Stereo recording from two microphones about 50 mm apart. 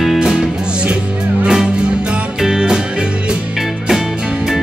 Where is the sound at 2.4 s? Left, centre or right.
Centre.